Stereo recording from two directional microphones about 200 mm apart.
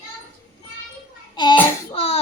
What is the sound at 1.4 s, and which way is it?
Speech, 20° left (ahead or behind).